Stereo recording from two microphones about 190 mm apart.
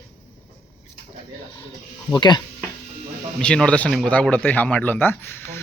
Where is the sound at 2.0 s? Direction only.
25° left (ahead or behind).